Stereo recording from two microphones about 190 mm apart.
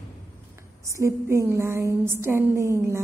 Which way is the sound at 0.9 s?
15° right (ahead or behind).